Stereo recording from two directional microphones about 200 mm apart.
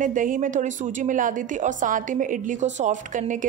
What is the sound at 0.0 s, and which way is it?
A woman's voice, 40° right (ahead or behind).